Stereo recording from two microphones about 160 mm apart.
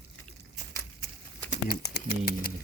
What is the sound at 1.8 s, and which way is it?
Speech, 90° left.